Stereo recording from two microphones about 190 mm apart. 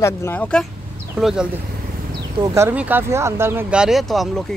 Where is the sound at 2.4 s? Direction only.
15° right (ahead or behind).